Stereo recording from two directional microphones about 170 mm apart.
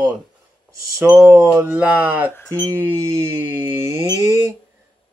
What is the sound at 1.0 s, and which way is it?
Speech, 15° right (ahead or behind).